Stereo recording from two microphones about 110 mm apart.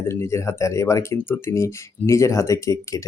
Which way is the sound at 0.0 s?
25° left (ahead or behind).